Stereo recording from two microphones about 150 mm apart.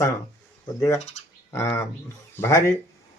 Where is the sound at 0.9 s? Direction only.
50° left (ahead or behind).